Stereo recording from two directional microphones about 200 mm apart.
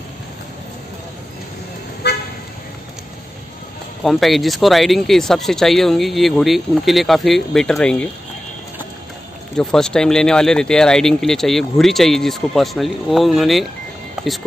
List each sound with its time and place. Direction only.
2.0 s toot: 55° left (ahead or behind)
4.0 s speech: centre (ahead or behind)
9.6 s speech: 5° left (ahead or behind)